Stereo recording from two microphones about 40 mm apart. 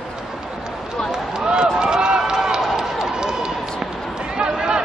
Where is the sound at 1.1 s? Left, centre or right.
Centre.